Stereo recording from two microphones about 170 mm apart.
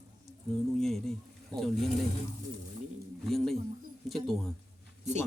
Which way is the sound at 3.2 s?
Centre (ahead or behind).